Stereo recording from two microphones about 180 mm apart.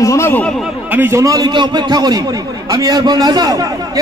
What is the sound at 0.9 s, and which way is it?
A man's voice, 15° right (ahead or behind).